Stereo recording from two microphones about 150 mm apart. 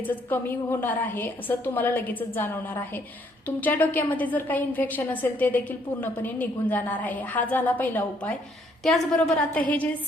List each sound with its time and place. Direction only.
0.0 s a woman's voice: 15° left (ahead or behind)